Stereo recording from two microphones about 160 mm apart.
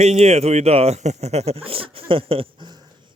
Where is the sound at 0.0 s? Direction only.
45° right (ahead or behind).